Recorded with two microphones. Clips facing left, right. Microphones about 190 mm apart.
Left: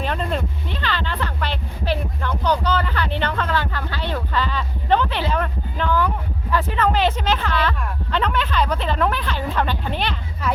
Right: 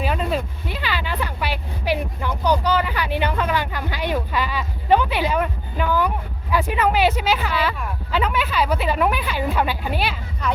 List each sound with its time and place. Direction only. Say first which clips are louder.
0.0 s vehicle: right 1 dB; 5° right (ahead or behind)